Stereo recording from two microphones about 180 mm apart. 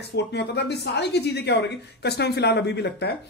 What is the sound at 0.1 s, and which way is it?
Speech, 70° left (ahead or behind).